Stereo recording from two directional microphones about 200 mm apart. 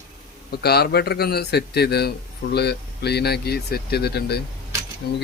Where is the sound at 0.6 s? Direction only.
50° left (ahead or behind).